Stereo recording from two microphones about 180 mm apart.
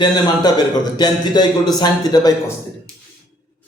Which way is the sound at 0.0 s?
25° left (ahead or behind).